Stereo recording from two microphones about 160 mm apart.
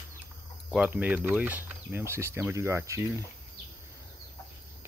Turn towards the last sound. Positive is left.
turn(degrees=-20)  # may be behind; listen again after turning